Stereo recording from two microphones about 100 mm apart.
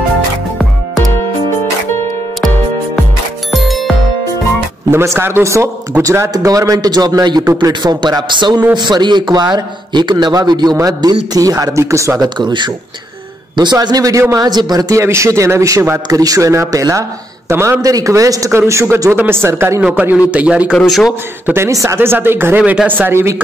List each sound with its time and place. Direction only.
3.5 s music: centre (ahead or behind)
4.9 s a man's voice: 25° right (ahead or behind)
12.4 s a man's voice: 50° right (ahead or behind); by 19.8 s 25° right (ahead or behind)
19.8 s a man's voice: 15° right (ahead or behind)
21.5 s a man's voice: 30° right (ahead or behind)